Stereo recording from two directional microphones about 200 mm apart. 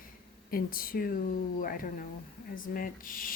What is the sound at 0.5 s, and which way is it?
Speech, 45° left (ahead or behind).